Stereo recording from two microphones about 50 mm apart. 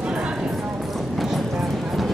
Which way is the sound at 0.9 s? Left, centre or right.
Centre.